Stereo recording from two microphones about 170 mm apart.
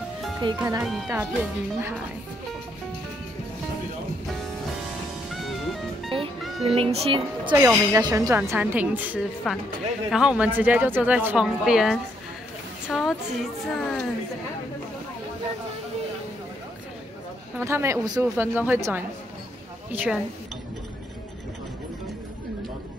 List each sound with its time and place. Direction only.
0.6 s a woman's voice: 15° right (ahead or behind)
0.8 s speech: centre (ahead or behind)
1.1 s a woman's voice: 10° right (ahead or behind)
5.3 s music: centre (ahead or behind)
6.0 s music: 30° right (ahead or behind)
6.7 s speech: 35° right (ahead or behind)
7.5 s a woman's voice: 20° right (ahead or behind)
9.5 s a woman's voice: centre (ahead or behind)
17.6 s a woman's voice: 15° right (ahead or behind)